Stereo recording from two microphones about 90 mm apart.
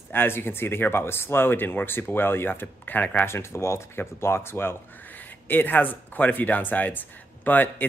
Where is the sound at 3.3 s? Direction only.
30° left (ahead or behind).